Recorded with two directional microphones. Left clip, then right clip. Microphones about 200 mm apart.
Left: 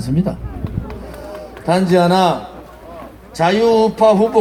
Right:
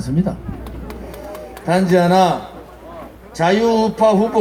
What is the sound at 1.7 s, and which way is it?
Speech, 15° left (ahead or behind).